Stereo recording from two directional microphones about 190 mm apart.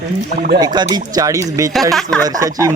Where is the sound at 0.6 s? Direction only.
20° right (ahead or behind).